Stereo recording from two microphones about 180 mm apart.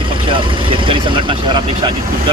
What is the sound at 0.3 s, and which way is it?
Vehicle, 30° right (ahead or behind).